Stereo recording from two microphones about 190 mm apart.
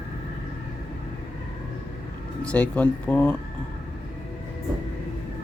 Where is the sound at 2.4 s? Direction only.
5° left (ahead or behind).